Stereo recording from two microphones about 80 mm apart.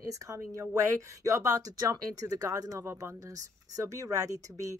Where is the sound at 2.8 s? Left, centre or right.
Right.